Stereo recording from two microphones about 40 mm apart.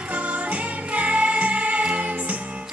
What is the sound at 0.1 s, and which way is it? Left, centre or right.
Music, right.